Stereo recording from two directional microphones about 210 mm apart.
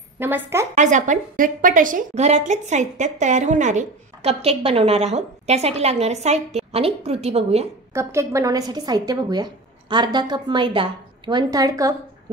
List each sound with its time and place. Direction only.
0.2 s a woman's voice: 10° right (ahead or behind)
0.7 s a woman's voice: 35° right (ahead or behind)
7.9 s a woman's voice: 15° right (ahead or behind)